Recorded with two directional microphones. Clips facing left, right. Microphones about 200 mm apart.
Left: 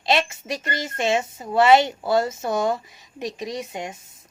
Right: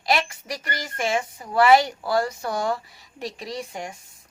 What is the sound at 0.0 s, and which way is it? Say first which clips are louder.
A woman's voice: left 2 dB; 25° left (ahead or behind).